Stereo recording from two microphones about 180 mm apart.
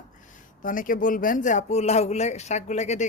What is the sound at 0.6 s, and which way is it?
Speech, 50° left (ahead or behind).